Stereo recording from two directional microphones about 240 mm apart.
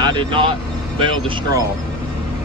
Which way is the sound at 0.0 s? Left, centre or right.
Centre.